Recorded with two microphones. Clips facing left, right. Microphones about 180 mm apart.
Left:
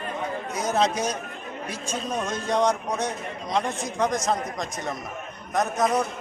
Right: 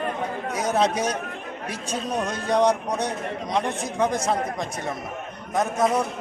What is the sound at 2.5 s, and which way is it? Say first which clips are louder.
Speech: right 3 dB; 15° right (ahead or behind).